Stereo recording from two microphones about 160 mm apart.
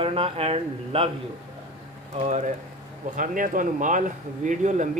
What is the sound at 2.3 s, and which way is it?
Speech, 45° right (ahead or behind).